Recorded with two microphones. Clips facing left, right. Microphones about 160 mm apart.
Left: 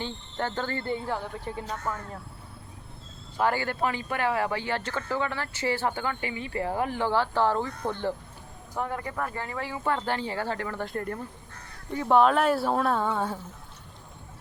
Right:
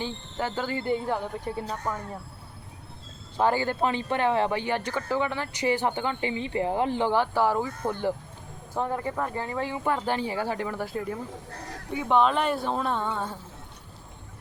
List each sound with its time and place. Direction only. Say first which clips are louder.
0.0 s speech: right 1 dB; 10° right (ahead or behind)
3.3 s speech: right 2 dB; 15° right (ahead or behind)
8.7 s speech: right 3 dB; 20° right (ahead or behind); by 13.4 s 10° left (ahead or behind)